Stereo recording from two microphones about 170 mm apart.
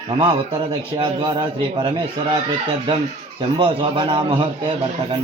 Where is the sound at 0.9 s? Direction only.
30° right (ahead or behind).